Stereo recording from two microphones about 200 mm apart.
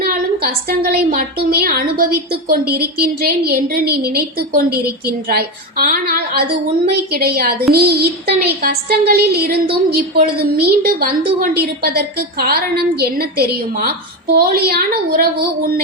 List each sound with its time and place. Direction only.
0.0 s a woman's voice: 50° right (ahead or behind)